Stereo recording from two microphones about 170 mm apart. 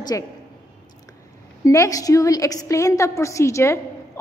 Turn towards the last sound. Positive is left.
turn(degrees=15)  # may be behind; listen again after turning